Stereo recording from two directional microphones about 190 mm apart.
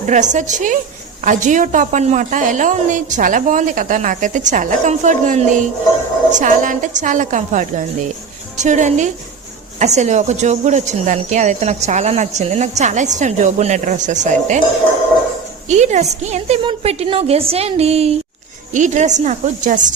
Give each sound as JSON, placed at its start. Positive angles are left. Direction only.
{"t": 0.1, "sound": "a woman's voice", "side_deg": -40}
{"t": 15.7, "sound": "a woman's voice", "side_deg": -35}